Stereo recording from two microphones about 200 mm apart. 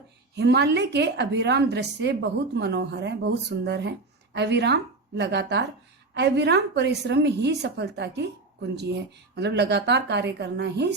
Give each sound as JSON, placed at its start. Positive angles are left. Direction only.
{"t": 0.3, "sound": "a woman's voice", "side_deg": -60}